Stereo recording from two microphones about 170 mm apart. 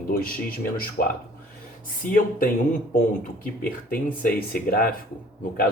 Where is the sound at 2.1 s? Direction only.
55° left (ahead or behind).